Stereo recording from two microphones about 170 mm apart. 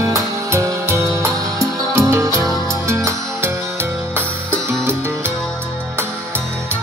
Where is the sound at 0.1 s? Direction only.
15° right (ahead or behind).